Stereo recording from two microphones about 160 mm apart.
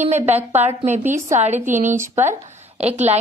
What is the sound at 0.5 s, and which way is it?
A woman's voice, 45° right (ahead or behind).